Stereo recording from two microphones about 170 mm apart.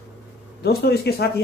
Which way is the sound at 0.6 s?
65° left (ahead or behind).